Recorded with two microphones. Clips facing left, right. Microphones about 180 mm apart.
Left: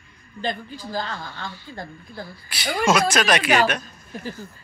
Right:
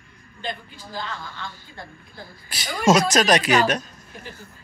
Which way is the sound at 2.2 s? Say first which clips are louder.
Left 4 dB; 45° right (ahead or behind).